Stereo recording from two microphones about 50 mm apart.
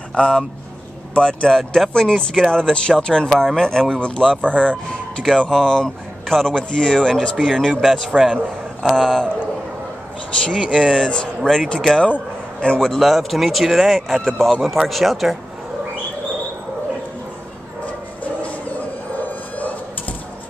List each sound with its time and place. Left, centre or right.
0.1 s a man's voice: left
1.5 s speech: centre
10.4 s speech: centre
13.0 s speech: centre